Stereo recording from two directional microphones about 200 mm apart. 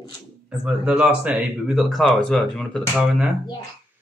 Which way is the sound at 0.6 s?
5° right (ahead or behind).